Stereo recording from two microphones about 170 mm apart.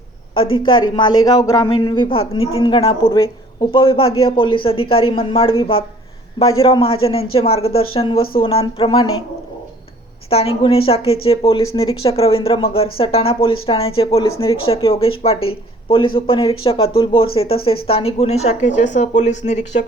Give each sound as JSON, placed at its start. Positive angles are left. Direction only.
{"t": 0.3, "sound": "speech", "side_deg": 30}
{"t": 10.2, "sound": "speech", "side_deg": 35}
{"t": 11.6, "sound": "speech", "side_deg": 20}
{"t": 12.0, "sound": "speech", "side_deg": 35}